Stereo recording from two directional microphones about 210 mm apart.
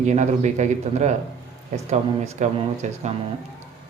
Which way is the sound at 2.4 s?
35° right (ahead or behind).